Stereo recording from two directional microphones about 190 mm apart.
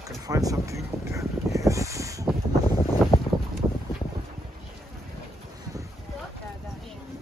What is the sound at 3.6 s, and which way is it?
Boat, 10° right (ahead or behind).